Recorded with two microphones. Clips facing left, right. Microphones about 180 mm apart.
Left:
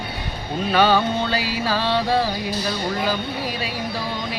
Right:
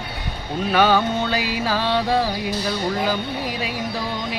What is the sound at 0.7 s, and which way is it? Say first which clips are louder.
Music: even; 15° right (ahead or behind).